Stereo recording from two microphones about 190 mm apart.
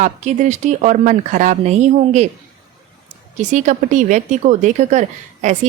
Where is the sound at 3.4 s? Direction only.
40° right (ahead or behind).